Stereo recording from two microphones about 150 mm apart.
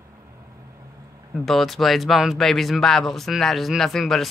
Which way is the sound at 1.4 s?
Centre (ahead or behind).